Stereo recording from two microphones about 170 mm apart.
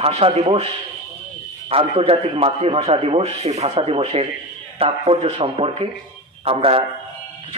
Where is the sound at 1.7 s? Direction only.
35° right (ahead or behind).